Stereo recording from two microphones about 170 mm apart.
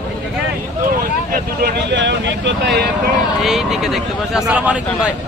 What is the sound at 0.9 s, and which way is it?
Speech, 65° right (ahead or behind).